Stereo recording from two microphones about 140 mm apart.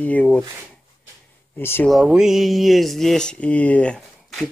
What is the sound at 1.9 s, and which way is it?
Speech, 5° right (ahead or behind).